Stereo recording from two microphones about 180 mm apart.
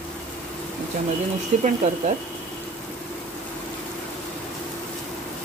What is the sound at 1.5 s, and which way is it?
Speech, 40° right (ahead or behind).